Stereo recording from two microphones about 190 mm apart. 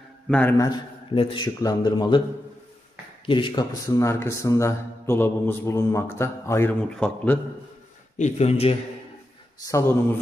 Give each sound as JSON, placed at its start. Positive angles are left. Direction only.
{"t": 0.3, "sound": "speech", "side_deg": 10}
{"t": 1.1, "sound": "speech", "side_deg": 25}
{"t": 3.3, "sound": "speech", "side_deg": 25}
{"t": 8.2, "sound": "speech", "side_deg": 35}
{"t": 9.7, "sound": "speech", "side_deg": 15}